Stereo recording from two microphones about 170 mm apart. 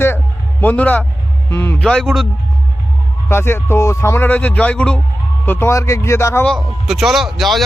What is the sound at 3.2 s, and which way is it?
Speech, 15° left (ahead or behind).